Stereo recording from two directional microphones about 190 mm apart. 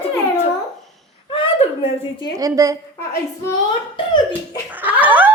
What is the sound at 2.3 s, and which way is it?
Speech, 20° right (ahead or behind).